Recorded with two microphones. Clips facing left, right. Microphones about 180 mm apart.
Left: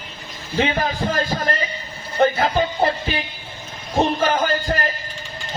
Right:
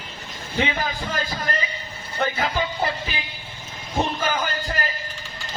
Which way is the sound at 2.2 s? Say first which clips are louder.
Left 7 dB; 40° left (ahead or behind).